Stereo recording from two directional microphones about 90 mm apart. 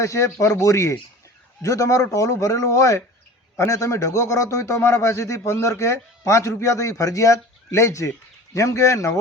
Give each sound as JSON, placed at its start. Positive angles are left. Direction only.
{"t": 0.0, "sound": "a man's voice", "side_deg": 35}